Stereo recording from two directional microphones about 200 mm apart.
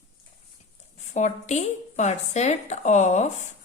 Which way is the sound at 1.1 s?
35° left (ahead or behind).